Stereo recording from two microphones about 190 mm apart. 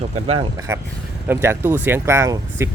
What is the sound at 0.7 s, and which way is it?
Speech, 10° right (ahead or behind).